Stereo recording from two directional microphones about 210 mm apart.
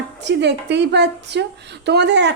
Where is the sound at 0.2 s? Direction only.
55° right (ahead or behind).